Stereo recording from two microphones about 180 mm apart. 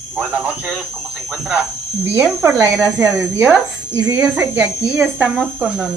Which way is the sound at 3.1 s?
Centre (ahead or behind).